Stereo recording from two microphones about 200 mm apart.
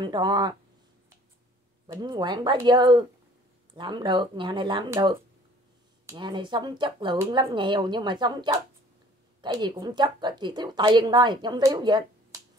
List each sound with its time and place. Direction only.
0.0 s a woman's voice: 20° right (ahead or behind)
1.9 s a woman's voice: 20° right (ahead or behind)